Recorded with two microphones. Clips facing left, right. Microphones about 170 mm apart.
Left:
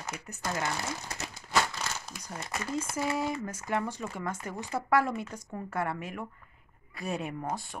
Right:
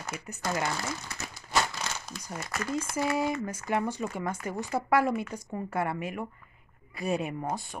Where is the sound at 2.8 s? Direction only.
Centre (ahead or behind).